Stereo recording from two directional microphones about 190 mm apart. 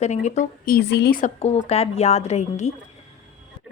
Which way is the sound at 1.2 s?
35° left (ahead or behind).